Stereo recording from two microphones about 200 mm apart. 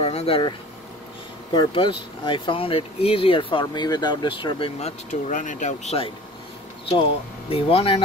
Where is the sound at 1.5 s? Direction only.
25° left (ahead or behind).